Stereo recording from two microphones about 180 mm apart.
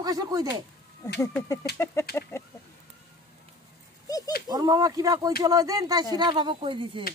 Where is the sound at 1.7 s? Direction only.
15° left (ahead or behind).